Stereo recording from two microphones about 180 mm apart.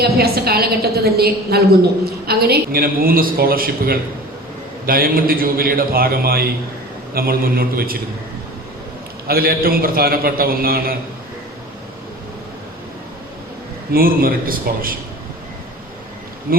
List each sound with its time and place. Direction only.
0.0 s a woman's voice: 60° right (ahead or behind)
9.2 s a woman's voice: 55° right (ahead or behind)
13.9 s a man's voice: 55° right (ahead or behind)
16.5 s a woman's voice: 55° right (ahead or behind)